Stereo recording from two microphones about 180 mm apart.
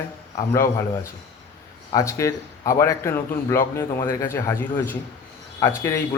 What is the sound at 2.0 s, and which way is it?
A man's voice, 15° left (ahead or behind).